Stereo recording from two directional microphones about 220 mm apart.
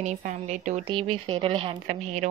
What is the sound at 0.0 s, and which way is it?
A woman's voice, 35° right (ahead or behind).